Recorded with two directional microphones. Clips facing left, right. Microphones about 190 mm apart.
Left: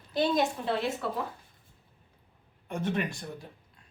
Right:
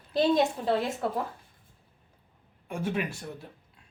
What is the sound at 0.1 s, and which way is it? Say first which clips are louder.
Speech: right 3 dB; 30° right (ahead or behind).